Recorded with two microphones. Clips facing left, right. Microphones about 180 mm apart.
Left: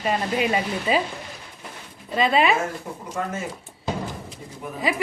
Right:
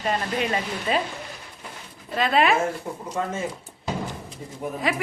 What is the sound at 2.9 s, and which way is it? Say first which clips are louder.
Speech: right 2 dB; 20° right (ahead or behind).